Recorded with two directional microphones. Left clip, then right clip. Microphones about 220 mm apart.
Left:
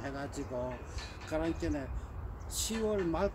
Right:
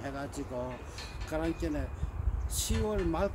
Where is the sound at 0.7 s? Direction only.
30° right (ahead or behind).